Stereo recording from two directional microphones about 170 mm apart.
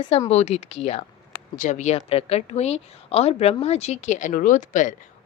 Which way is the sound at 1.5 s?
45° left (ahead or behind).